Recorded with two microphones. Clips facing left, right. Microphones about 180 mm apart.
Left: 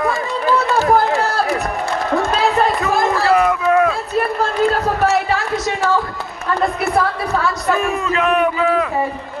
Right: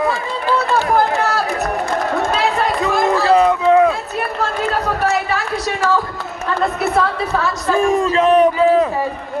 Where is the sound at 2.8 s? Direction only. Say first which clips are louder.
Right 1 dB; 25° right (ahead or behind).